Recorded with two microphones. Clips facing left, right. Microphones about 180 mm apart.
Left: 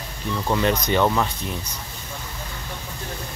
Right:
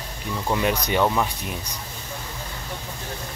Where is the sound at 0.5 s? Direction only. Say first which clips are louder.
Left 1 dB; 10° right (ahead or behind).